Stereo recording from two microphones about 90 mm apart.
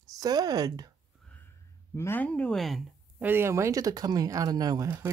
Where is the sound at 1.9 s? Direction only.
30° left (ahead or behind).